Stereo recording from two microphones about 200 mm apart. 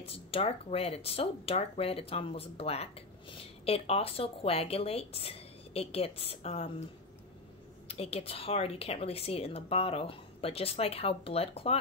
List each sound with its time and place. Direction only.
0.0 s speech: 30° left (ahead or behind)
7.9 s speech: 30° left (ahead or behind)